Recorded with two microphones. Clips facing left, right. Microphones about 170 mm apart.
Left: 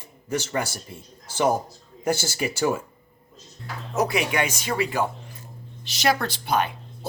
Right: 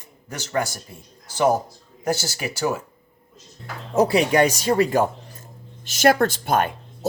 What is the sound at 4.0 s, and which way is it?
Speech, 35° right (ahead or behind).